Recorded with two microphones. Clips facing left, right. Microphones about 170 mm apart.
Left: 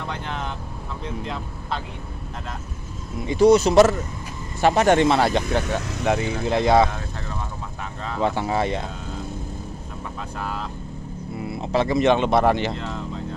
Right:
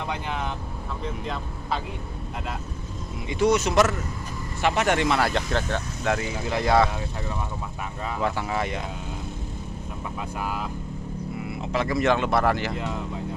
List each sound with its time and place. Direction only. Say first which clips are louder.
0.1 s speech: even; 5° right (ahead or behind)
3.3 s speech: left 7 dB; 35° left (ahead or behind)
8.2 s speech: left 5 dB; 30° left (ahead or behind)
10.4 s speech: left 1 dB; 10° right (ahead or behind)
11.4 s speech: left 6 dB; 30° left (ahead or behind)